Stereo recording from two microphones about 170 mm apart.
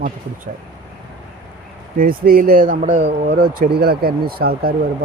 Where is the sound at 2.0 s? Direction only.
60° right (ahead or behind); by 3.3 s 40° right (ahead or behind).